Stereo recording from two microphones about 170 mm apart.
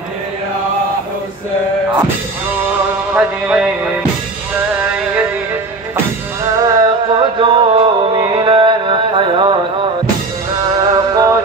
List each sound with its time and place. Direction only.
3.2 s music: 5° right (ahead or behind)
6.6 s music: 25° right (ahead or behind)
10.8 s music: 20° right (ahead or behind)